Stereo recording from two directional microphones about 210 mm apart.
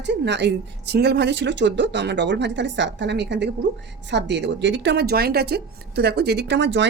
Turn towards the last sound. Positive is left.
turn(degrees=-60)  # may be behind; listen again after turning